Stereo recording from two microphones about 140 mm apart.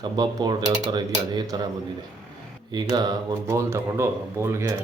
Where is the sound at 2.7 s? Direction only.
30° right (ahead or behind).